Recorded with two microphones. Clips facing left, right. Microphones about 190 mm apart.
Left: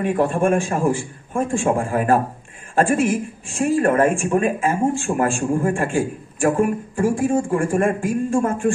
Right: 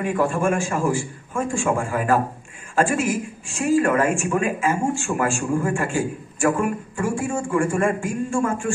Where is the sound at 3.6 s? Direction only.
35° left (ahead or behind).